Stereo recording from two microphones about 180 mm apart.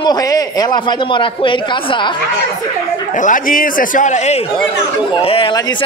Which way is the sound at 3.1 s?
45° left (ahead or behind).